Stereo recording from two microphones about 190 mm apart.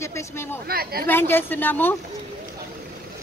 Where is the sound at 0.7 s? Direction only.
55° right (ahead or behind).